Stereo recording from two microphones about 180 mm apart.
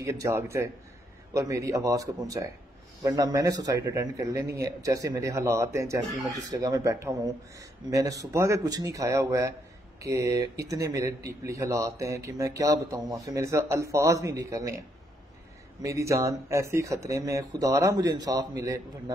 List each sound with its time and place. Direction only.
0.0 s a man's voice: 15° right (ahead or behind)
15.8 s speech: 15° right (ahead or behind)